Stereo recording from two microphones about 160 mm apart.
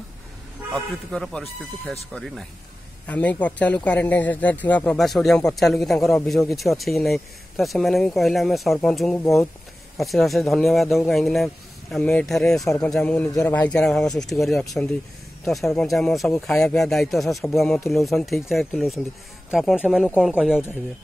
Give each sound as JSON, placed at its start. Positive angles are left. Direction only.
{"t": 1.1, "sound": "a man's voice", "side_deg": 5}
{"t": 13.3, "sound": "speech", "side_deg": 20}
{"t": 13.6, "sound": "speech", "side_deg": 5}